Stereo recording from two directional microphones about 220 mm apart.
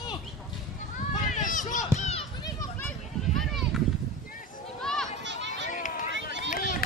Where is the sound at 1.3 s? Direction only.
35° left (ahead or behind).